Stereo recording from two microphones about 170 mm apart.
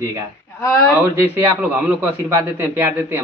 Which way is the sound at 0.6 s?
20° left (ahead or behind).